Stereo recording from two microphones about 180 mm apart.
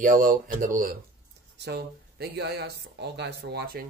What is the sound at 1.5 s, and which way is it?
Speech, 65° right (ahead or behind).